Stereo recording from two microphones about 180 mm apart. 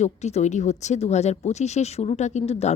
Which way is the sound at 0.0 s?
40° left (ahead or behind).